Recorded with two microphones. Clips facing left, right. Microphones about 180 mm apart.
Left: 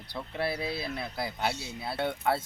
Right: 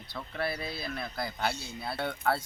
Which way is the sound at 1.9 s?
20° left (ahead or behind).